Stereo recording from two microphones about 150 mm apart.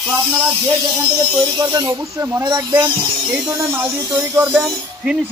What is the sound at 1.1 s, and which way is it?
A man's voice, 25° right (ahead or behind).